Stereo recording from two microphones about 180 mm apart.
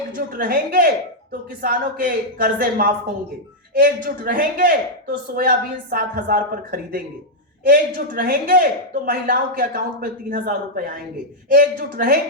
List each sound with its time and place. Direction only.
0.1 s speech: 50° right (ahead or behind)